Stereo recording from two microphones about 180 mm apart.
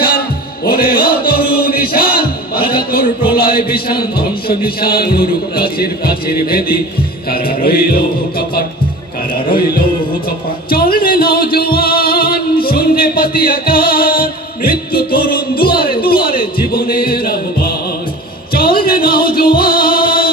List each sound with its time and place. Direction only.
0.7 s music: 55° left (ahead or behind)
3.3 s mantra: 55° left (ahead or behind)
4.5 s a man's voice: 55° left (ahead or behind)
10.7 s music: 55° left (ahead or behind)